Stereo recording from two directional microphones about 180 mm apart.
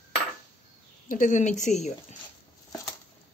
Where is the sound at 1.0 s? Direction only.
50° left (ahead or behind).